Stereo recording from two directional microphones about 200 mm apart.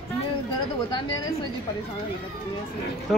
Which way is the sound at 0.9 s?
25° left (ahead or behind).